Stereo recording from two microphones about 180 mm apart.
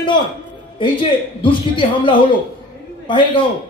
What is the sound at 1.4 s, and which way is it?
Speech, 25° left (ahead or behind).